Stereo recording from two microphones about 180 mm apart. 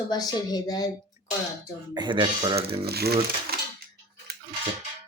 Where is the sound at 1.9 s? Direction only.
25° right (ahead or behind).